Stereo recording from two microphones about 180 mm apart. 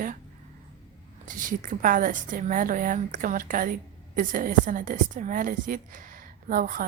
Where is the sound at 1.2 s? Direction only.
45° right (ahead or behind).